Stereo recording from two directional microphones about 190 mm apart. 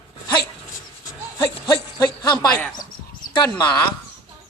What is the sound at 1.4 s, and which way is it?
Speech, 25° left (ahead or behind).